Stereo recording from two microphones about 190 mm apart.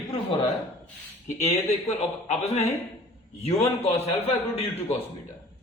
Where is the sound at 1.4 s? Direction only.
35° left (ahead or behind).